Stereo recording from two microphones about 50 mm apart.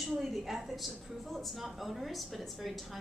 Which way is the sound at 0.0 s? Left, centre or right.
Centre.